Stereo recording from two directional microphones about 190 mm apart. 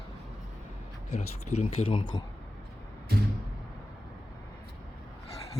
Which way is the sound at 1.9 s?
25° left (ahead or behind).